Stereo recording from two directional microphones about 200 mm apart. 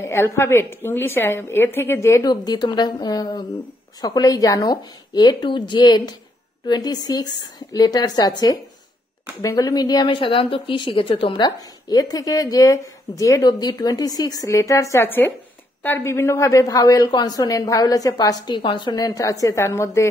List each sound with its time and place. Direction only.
0.0 s speech: 15° left (ahead or behind)